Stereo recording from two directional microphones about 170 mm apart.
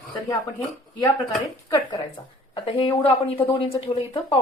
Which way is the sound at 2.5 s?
30° left (ahead or behind).